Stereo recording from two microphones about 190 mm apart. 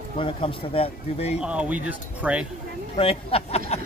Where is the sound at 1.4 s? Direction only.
5° right (ahead or behind).